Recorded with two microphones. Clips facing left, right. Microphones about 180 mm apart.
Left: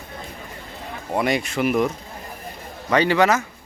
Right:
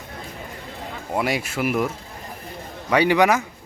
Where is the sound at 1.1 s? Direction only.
5° right (ahead or behind).